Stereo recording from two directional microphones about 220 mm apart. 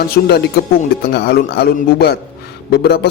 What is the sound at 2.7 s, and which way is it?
Speech, 45° left (ahead or behind).